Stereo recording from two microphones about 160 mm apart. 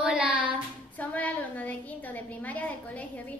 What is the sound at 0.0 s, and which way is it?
Child singing, 5° right (ahead or behind).